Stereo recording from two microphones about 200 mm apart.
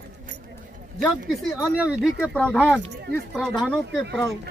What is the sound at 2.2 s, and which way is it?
A man's voice, 5° left (ahead or behind).